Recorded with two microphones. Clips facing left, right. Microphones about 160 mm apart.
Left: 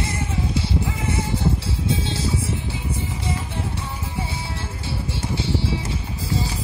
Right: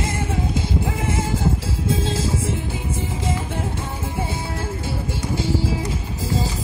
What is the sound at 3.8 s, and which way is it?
Music, 50° right (ahead or behind).